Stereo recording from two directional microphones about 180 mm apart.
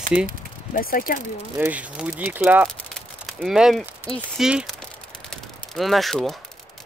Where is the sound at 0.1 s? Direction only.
5° right (ahead or behind).